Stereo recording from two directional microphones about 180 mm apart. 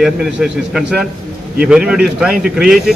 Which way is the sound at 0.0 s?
Centre (ahead or behind).